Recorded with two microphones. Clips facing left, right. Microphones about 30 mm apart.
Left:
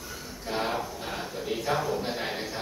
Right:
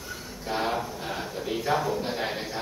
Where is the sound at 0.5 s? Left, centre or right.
Centre.